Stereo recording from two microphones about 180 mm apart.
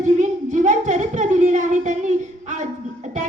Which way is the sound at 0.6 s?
45° right (ahead or behind).